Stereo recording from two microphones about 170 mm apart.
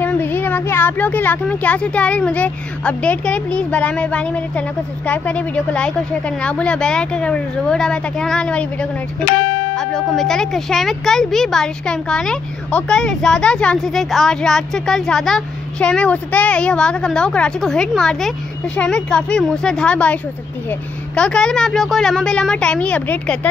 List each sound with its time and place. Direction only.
0.0 s speech: 10° left (ahead or behind)
9.3 s speech: 85° left
9.8 s speech: 5° left (ahead or behind)